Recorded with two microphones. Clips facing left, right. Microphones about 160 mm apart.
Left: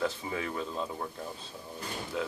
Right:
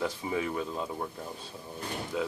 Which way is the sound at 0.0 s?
10° right (ahead or behind).